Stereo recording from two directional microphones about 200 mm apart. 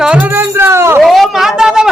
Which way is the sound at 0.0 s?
5° right (ahead or behind).